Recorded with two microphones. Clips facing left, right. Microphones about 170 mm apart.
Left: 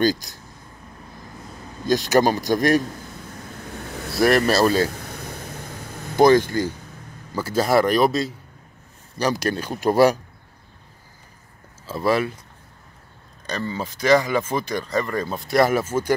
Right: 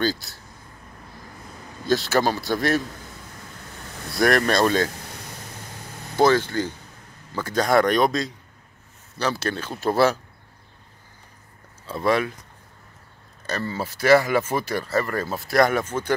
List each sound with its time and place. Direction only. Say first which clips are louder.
0.0 s speech: left 4 dB; 15° left (ahead or behind)
1.9 s speech: left 3 dB; 15° left (ahead or behind)
4.1 s speech: left 2 dB; 5° left (ahead or behind)
6.1 s speech: left 4 dB; 15° left (ahead or behind)
9.2 s speech: left 3 dB; 15° left (ahead or behind)
11.8 s speech: left 1 dB; 5° left (ahead or behind)
13.7 s speech: right 1 dB; 10° right (ahead or behind); by 16.2 s 10° left (ahead or behind)